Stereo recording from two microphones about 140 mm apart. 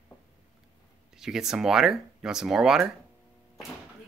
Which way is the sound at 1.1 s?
5° right (ahead or behind).